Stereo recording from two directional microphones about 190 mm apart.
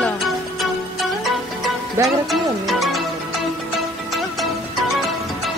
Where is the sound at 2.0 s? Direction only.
15° right (ahead or behind).